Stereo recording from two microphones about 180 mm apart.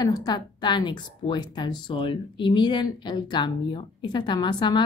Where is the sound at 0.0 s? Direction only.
20° left (ahead or behind).